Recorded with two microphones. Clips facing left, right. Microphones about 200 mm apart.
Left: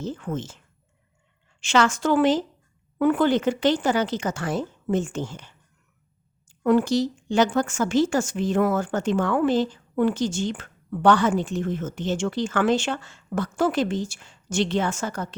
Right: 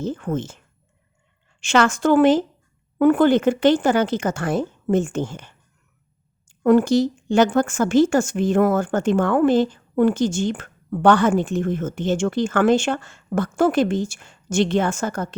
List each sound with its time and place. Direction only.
0.0 s speech: 50° right (ahead or behind)
1.6 s speech: 50° right (ahead or behind)
6.6 s speech: 50° right (ahead or behind)